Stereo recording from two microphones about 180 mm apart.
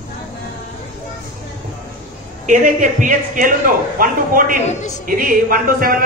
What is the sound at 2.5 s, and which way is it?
A man's voice, 45° right (ahead or behind).